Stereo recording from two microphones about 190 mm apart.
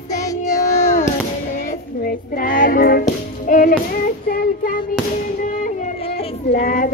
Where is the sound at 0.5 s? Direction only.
15° left (ahead or behind).